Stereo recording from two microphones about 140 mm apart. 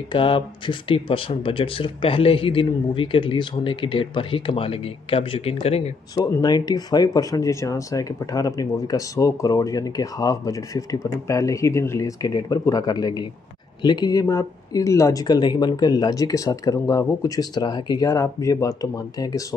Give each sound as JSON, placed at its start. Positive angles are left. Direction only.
{"t": 0.1, "sound": "speech", "side_deg": 35}
{"t": 6.4, "sound": "speech", "side_deg": 30}